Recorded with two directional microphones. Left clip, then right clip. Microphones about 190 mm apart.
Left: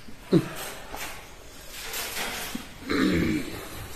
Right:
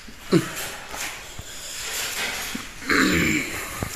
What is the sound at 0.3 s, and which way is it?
Speech, 10° right (ahead or behind).